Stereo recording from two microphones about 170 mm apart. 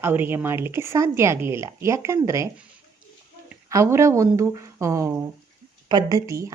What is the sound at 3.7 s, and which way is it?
A woman's voice, 15° right (ahead or behind).